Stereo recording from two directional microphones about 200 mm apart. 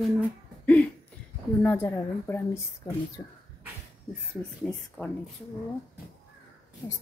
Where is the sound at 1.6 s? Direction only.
10° left (ahead or behind).